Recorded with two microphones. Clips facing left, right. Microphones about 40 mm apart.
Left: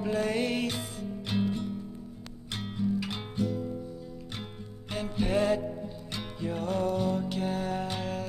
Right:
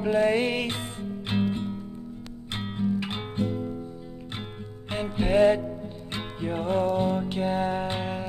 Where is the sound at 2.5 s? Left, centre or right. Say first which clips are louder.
Right 3 dB; right.